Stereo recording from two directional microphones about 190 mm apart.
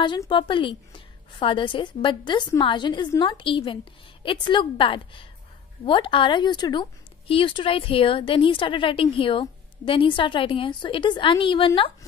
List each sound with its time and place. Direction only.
0.0 s speech: 25° left (ahead or behind)